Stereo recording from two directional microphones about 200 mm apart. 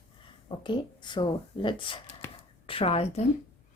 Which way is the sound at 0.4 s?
25° left (ahead or behind).